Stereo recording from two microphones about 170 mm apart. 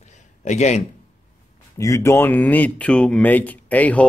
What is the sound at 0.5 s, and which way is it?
Speech, 40° left (ahead or behind).